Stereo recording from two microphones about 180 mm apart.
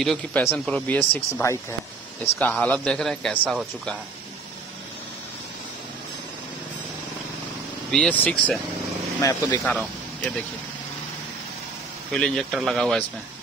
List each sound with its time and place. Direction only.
0.0 s speech: 5° left (ahead or behind)
7.9 s speech: 5° left (ahead or behind)
9.2 s speech: 20° left (ahead or behind)
9.7 s speech: 5° left (ahead or behind)
12.1 s speech: 5° left (ahead or behind)